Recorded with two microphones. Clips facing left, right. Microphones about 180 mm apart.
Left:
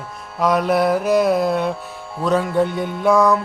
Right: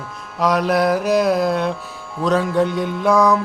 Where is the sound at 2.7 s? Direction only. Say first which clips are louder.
Right 2 dB; 55° left (ahead or behind).